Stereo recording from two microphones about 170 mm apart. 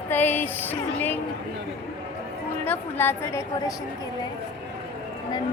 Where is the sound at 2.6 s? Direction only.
10° left (ahead or behind).